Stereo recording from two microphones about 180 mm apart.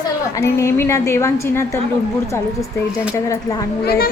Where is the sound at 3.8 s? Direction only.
55° left (ahead or behind).